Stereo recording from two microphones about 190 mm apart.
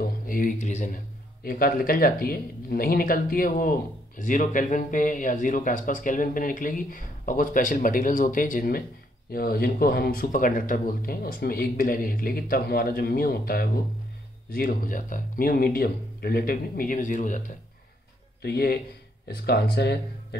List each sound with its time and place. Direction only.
0.0 s a man's voice: 45° left (ahead or behind)
18.4 s speech: 55° left (ahead or behind)